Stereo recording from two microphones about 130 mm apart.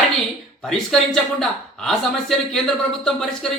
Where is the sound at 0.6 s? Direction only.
5° left (ahead or behind).